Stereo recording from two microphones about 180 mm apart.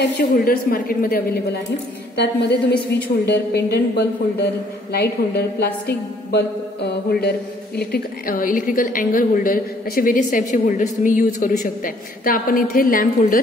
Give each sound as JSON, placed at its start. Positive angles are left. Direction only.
{"t": 0.0, "sound": "a woman's voice", "side_deg": 55}
{"t": 2.9, "sound": "a woman's voice", "side_deg": 70}